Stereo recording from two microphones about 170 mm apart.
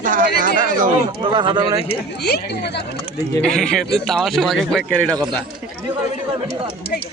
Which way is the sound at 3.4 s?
5° left (ahead or behind).